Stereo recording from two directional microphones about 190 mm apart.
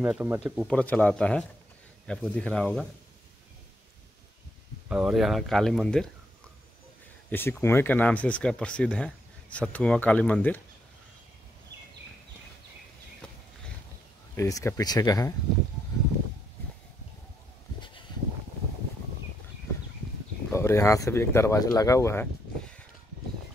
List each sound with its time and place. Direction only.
0.0 s speech: 10° right (ahead or behind)
0.7 s speech: 5° left (ahead or behind)
4.8 s speech: 5° right (ahead or behind)
7.2 s speech: 10° left (ahead or behind)
11.7 s a sound: 60° right (ahead or behind)
14.3 s speech: 15° left (ahead or behind)
17.7 s a sound: 25° left (ahead or behind)
20.5 s speech: 15° left (ahead or behind)